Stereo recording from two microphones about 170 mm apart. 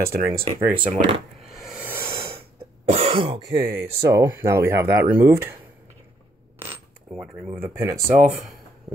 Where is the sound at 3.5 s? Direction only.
35° right (ahead or behind).